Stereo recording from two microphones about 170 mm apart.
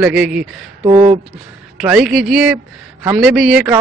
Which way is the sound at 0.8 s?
30° right (ahead or behind).